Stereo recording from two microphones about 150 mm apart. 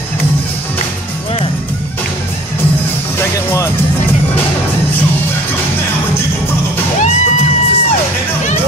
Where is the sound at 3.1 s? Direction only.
15° left (ahead or behind).